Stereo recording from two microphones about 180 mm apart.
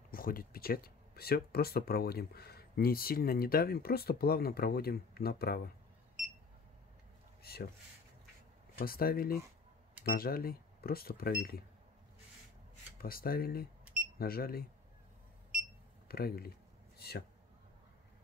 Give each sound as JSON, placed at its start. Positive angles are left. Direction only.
{"t": 0.1, "sound": "speech", "side_deg": 55}
{"t": 7.4, "sound": "speech", "side_deg": 60}
{"t": 8.7, "sound": "speech", "side_deg": 55}
{"t": 13.0, "sound": "speech", "side_deg": 55}
{"t": 16.1, "sound": "speech", "side_deg": 55}